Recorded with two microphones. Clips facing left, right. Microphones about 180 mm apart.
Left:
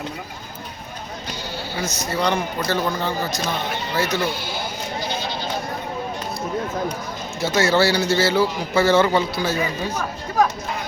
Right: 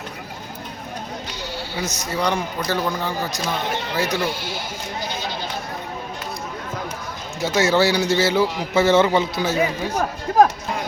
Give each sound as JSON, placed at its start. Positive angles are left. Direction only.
{"t": 1.8, "sound": "a man's voice", "side_deg": -15}
{"t": 7.4, "sound": "a man's voice", "side_deg": -15}